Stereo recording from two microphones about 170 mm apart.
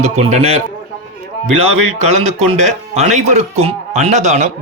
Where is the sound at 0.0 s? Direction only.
40° right (ahead or behind).